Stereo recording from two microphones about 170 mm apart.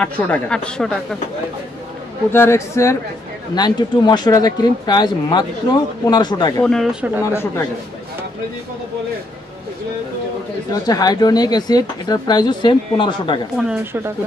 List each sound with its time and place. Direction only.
0.0 s speech: 5° left (ahead or behind)
2.3 s speech: 15° left (ahead or behind)
6.6 s speech: centre (ahead or behind)
10.7 s speech: 25° left (ahead or behind)